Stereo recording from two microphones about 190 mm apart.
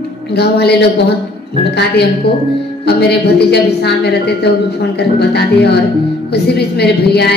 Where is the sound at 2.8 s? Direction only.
60° left (ahead or behind).